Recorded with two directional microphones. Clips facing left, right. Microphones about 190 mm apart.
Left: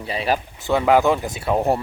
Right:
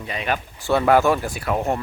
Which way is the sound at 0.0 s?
30° left (ahead or behind).